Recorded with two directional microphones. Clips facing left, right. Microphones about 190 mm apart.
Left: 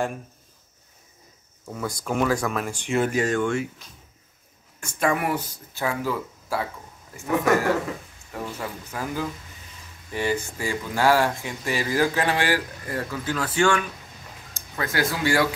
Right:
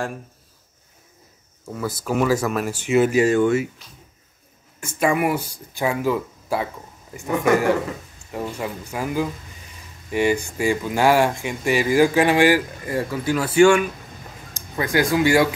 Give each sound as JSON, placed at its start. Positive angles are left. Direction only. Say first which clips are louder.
{"t": 1.7, "sound": "speech", "louder": "right 3 dB", "side_deg": -5}
{"t": 4.7, "sound": "speech", "louder": "right 4 dB", "side_deg": -10}
{"t": 8.3, "sound": "speech", "louder": "right 5 dB", "side_deg": -15}